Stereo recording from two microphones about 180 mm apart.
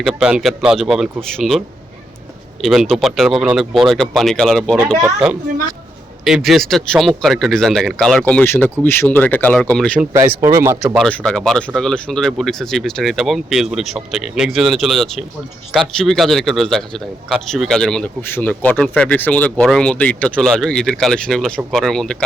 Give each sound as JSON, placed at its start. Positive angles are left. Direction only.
{"t": 0.0, "sound": "speech", "side_deg": -5}
{"t": 10.1, "sound": "speech", "side_deg": -15}
{"t": 10.9, "sound": "speech", "side_deg": 5}